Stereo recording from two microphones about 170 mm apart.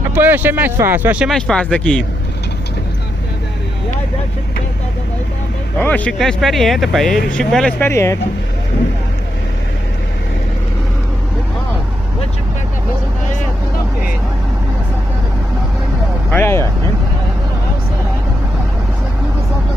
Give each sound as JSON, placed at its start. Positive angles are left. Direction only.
{"t": 0.1, "sound": "speech", "side_deg": -10}
{"t": 1.3, "sound": "speech", "side_deg": 5}
{"t": 5.8, "sound": "speech", "side_deg": 10}
{"t": 7.9, "sound": "speech", "side_deg": 15}
{"t": 16.3, "sound": "speech", "side_deg": 15}